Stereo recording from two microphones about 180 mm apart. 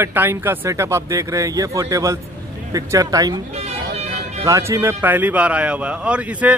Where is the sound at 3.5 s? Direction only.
35° right (ahead or behind).